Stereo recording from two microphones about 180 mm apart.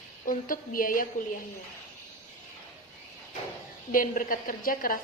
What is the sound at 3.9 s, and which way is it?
A woman's voice, 50° left (ahead or behind).